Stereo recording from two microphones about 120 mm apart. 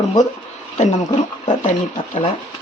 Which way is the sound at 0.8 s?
75° left (ahead or behind).